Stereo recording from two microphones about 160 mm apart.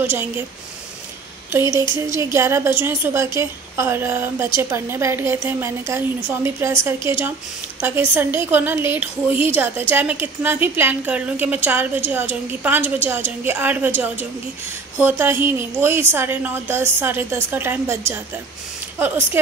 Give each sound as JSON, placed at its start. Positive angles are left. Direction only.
{"t": 0.0, "sound": "a woman's voice", "side_deg": -15}
{"t": 2.1, "sound": "a woman's voice", "side_deg": -15}